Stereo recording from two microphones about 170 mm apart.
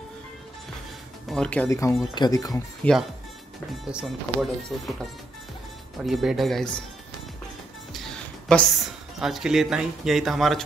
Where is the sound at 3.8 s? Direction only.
5° right (ahead or behind).